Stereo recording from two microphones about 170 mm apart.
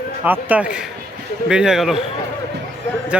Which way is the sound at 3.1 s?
5° right (ahead or behind).